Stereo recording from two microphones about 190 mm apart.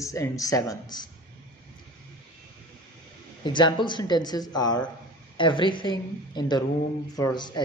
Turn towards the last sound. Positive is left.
turn(degrees=20)  # may be behind; listen again after turning